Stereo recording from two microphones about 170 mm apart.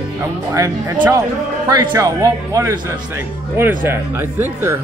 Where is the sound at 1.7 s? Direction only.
20° right (ahead or behind).